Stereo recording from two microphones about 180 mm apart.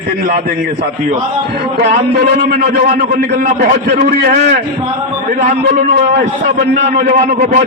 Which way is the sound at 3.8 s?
60° right (ahead or behind).